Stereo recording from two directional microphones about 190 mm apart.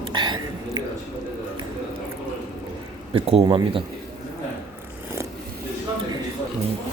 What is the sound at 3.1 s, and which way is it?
Speech, 30° right (ahead or behind).